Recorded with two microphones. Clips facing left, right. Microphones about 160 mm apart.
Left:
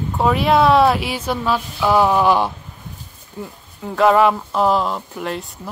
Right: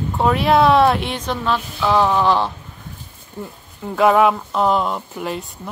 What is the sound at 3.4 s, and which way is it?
Speech, centre (ahead or behind).